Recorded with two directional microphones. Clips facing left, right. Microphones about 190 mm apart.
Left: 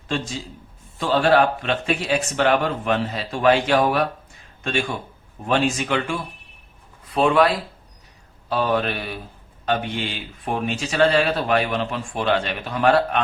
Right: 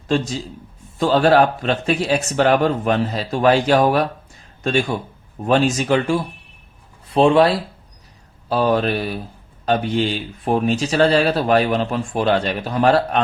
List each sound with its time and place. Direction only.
0.9 s speech: 40° right (ahead or behind)